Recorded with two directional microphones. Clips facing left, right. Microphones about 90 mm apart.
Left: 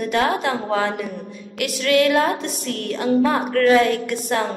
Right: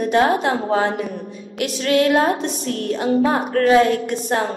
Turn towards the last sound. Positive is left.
turn(degrees=-30)  # may be behind; listen again after turning